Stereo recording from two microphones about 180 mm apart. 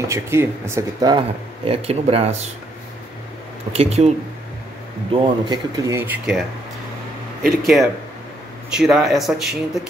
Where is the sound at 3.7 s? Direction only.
35° right (ahead or behind).